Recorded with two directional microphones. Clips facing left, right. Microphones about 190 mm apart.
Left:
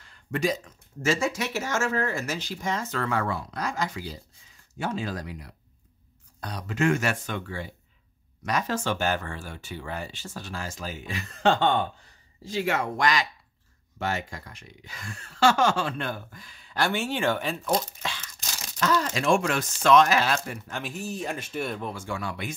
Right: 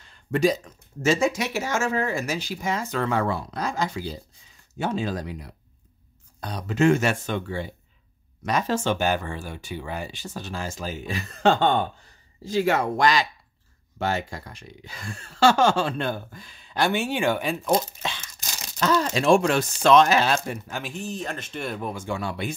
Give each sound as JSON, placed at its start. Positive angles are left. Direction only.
{"t": 0.0, "sound": "a sound", "side_deg": -25}
{"t": 1.0, "sound": "speech", "side_deg": -20}
{"t": 18.2, "sound": "tearing", "side_deg": -15}
{"t": 18.8, "sound": "speech", "side_deg": -25}
{"t": 20.6, "sound": "speech", "side_deg": -5}
{"t": 20.9, "sound": "speech", "side_deg": 10}
{"t": 21.6, "sound": "speech", "side_deg": -5}
{"t": 21.9, "sound": "speech", "side_deg": -20}